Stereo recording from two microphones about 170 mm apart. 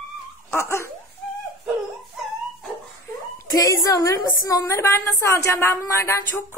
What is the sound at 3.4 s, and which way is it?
A woman's voice, 20° left (ahead or behind).